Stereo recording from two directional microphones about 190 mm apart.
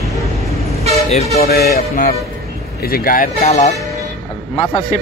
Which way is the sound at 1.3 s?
55° left (ahead or behind).